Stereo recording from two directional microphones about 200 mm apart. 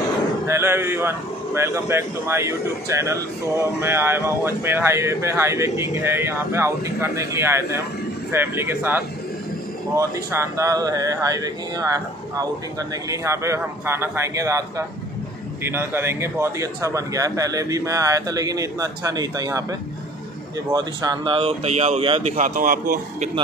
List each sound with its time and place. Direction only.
0.5 s speech: 10° right (ahead or behind); by 23.3 s 40° right (ahead or behind)